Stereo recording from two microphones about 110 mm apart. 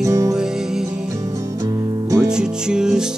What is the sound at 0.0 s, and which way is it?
Music, 25° right (ahead or behind).